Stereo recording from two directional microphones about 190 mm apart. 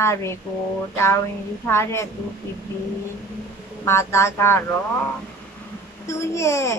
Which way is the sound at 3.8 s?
15° left (ahead or behind).